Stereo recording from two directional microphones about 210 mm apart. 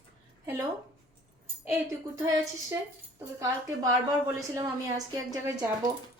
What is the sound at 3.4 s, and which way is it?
A woman's voice, 15° right (ahead or behind).